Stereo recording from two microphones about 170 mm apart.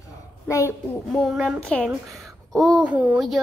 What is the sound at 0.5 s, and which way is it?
Speech, 20° left (ahead or behind).